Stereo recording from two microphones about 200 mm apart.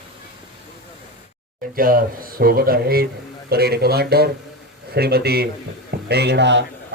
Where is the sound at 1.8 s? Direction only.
45° right (ahead or behind).